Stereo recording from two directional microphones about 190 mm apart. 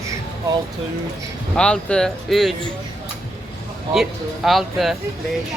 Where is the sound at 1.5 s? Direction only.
5° left (ahead or behind).